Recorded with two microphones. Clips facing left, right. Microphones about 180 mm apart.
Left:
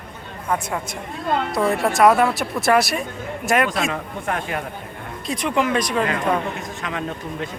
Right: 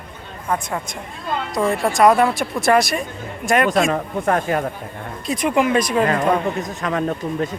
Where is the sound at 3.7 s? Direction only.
45° right (ahead or behind).